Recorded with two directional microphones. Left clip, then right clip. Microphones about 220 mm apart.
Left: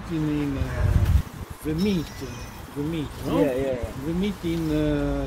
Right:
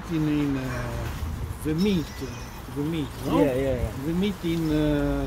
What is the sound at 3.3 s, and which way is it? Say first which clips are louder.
Speech: even; 5° right (ahead or behind).